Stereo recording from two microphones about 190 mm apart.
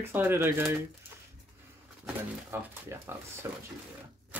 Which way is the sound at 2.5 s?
15° right (ahead or behind).